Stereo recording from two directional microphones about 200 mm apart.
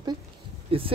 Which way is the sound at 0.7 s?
30° right (ahead or behind).